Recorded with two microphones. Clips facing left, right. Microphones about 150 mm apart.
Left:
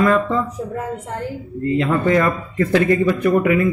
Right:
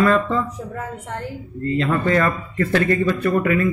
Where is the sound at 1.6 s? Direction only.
15° left (ahead or behind).